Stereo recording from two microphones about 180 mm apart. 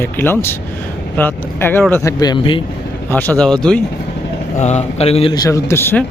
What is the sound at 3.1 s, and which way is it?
Speech, 10° left (ahead or behind).